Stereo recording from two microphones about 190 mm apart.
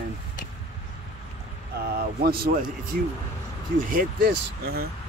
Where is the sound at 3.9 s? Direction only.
50° right (ahead or behind).